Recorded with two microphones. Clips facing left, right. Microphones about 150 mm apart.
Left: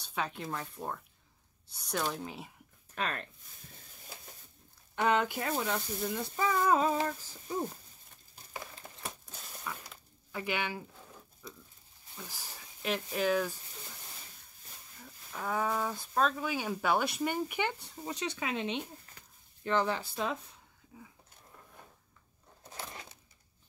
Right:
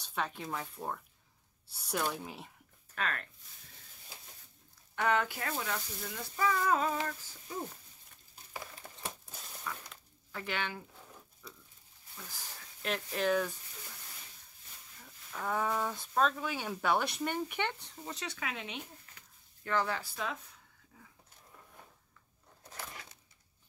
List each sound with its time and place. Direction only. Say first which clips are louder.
0.0 s speech: left 1 dB; centre (ahead or behind)
2.9 s speech: left 1 dB; 20° left (ahead or behind)
4.9 s speech: left 2 dB; 20° left (ahead or behind)
7.0 s speech: left 4 dB; 30° left (ahead or behind)
8.8 s a sound: left 1 dB; 10° left (ahead or behind)
9.2 s zipper: left 1 dB; centre (ahead or behind)
12.2 s speech: left 2 dB; 10° left (ahead or behind)
15.3 s speech: left 1 dB; centre (ahead or behind); by 18.9 s 25° left (ahead or behind)
19.1 s a sound: left 3 dB; 35° left (ahead or behind)
19.6 s speech: left 3 dB; 20° left (ahead or behind)
22.8 s a sound: left 2 dB; 25° left (ahead or behind)